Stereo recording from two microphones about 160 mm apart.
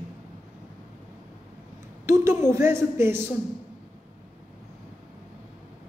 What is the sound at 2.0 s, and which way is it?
A woman's voice, 15° right (ahead or behind).